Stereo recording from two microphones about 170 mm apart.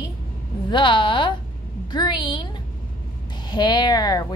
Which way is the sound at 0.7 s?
30° left (ahead or behind).